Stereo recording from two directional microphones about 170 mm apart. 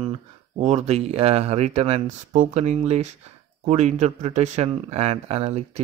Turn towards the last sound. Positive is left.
turn(degrees=-40)  # may be behind; listen again after turning